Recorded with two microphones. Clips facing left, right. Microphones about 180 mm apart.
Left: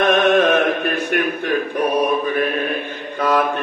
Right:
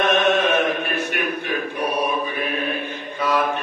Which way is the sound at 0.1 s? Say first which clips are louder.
Left 4 dB; 55° left (ahead or behind).